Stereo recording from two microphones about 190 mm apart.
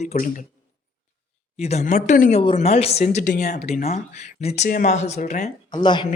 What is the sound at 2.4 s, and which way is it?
Speech, 30° left (ahead or behind).